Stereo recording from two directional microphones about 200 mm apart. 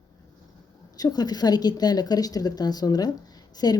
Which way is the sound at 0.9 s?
20° left (ahead or behind).